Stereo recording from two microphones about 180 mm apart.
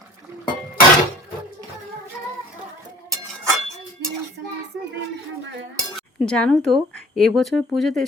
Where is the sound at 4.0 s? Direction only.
75° right (ahead or behind).